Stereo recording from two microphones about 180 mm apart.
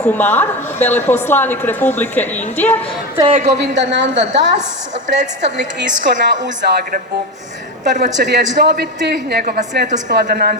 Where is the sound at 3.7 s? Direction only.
90° right.